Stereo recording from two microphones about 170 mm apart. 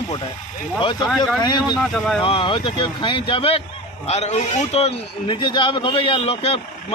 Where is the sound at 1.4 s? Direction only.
25° left (ahead or behind).